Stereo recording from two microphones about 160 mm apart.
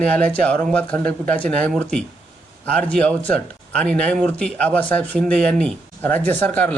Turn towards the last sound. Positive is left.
turn(degrees=10)  # may be behind; listen again after turning